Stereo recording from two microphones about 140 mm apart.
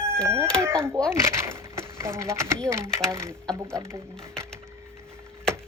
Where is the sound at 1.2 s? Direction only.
20° right (ahead or behind).